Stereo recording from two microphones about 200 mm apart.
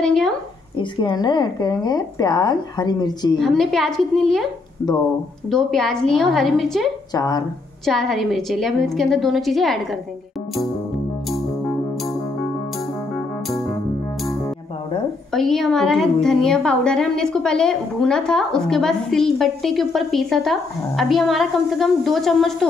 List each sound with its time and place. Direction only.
0.0 s a woman's voice: centre (ahead or behind)
0.7 s a woman's voice: 20° left (ahead or behind)
3.3 s a woman's voice: centre (ahead or behind)
5.5 s a woman's voice: centre (ahead or behind)
7.2 s a woman's voice: 20° left (ahead or behind)
7.8 s a woman's voice: centre (ahead or behind)
15.3 s a woman's voice: centre (ahead or behind)